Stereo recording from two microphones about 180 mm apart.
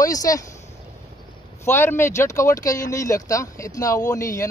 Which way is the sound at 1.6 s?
15° left (ahead or behind).